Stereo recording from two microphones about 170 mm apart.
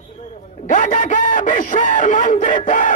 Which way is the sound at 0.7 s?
55° left (ahead or behind).